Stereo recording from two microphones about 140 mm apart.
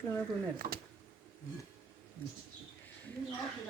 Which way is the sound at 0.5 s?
90° right.